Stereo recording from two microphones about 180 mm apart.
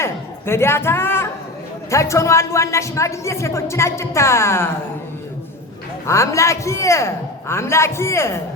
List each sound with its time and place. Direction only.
0.0 s a sound: 15° left (ahead or behind)
1.9 s speech: 15° left (ahead or behind)
6.1 s speech: 15° left (ahead or behind)